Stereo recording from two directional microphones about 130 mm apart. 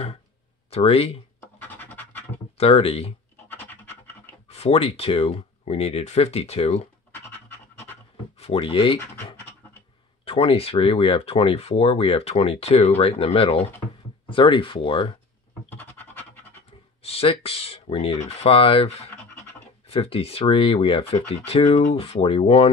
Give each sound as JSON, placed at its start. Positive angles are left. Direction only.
{"t": 0.7, "sound": "speech", "side_deg": 50}
{"t": 1.6, "sound": "scratch", "side_deg": 15}
{"t": 2.5, "sound": "speech", "side_deg": 50}
{"t": 3.4, "sound": "scratch", "side_deg": 15}
{"t": 4.5, "sound": "speech", "side_deg": 50}
{"t": 7.2, "sound": "pant", "side_deg": 15}
{"t": 8.4, "sound": "speech", "side_deg": 45}
{"t": 10.2, "sound": "speech", "side_deg": 45}
{"t": 15.7, "sound": "music", "side_deg": 15}
{"t": 17.0, "sound": "speech", "side_deg": 50}